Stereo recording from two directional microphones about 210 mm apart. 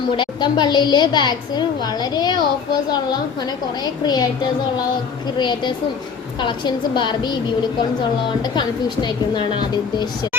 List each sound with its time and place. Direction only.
0.1 s a woman's voice: 20° left (ahead or behind)
3.8 s a woman's voice: 20° left (ahead or behind)
5.4 s a woman's voice: 20° left (ahead or behind)
8.5 s a woman's voice: 20° left (ahead or behind)